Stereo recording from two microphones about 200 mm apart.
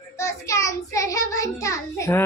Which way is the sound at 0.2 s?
15° left (ahead or behind).